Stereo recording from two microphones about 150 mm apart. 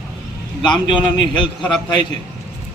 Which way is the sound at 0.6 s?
30° left (ahead or behind).